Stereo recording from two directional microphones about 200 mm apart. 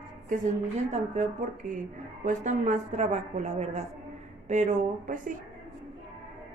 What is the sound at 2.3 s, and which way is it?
Speech, 35° right (ahead or behind).